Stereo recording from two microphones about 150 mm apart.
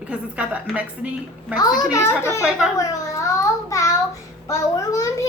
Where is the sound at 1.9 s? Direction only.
15° left (ahead or behind).